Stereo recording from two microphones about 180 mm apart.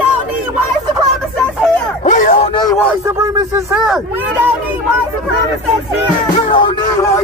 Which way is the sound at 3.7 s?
5° right (ahead or behind).